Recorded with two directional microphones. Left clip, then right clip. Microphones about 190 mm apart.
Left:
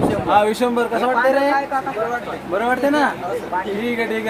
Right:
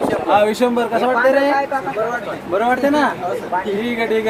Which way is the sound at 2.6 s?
30° left (ahead or behind).